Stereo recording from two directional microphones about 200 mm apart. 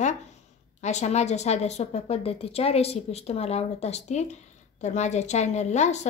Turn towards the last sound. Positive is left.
turn(degrees=35)  # may be behind; listen again after turning